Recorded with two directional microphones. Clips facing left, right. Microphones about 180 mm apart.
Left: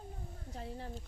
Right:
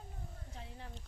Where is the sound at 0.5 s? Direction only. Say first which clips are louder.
Left 9 dB; 40° left (ahead or behind).